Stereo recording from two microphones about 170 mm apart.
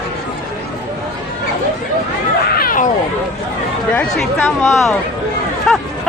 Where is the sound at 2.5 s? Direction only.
55° left (ahead or behind).